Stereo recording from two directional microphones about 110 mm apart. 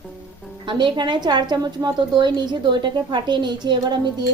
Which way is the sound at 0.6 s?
50° right (ahead or behind).